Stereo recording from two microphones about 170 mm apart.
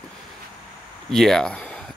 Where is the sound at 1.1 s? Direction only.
Centre (ahead or behind).